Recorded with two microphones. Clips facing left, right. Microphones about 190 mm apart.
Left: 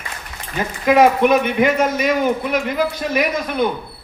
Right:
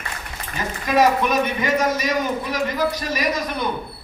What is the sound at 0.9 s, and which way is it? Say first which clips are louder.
Speech: left 5 dB; 60° left (ahead or behind).